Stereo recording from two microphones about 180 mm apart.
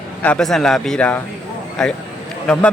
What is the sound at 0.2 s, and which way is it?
A man's voice, 5° left (ahead or behind).